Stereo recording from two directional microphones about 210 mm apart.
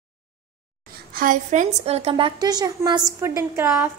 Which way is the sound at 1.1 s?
40° right (ahead or behind).